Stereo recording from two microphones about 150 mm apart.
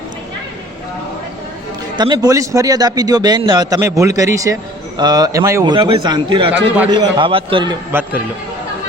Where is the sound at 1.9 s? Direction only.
25° right (ahead or behind).